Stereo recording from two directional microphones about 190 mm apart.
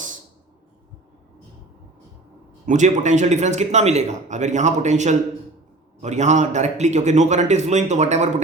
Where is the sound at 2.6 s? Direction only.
40° right (ahead or behind).